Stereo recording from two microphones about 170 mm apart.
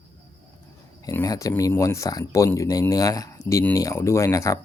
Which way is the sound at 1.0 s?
20° left (ahead or behind).